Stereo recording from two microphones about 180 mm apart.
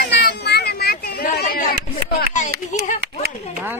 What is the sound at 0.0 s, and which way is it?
Children playing, 65° left (ahead or behind).